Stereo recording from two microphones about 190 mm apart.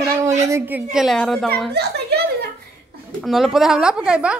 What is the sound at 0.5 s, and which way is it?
Speech, 10° right (ahead or behind).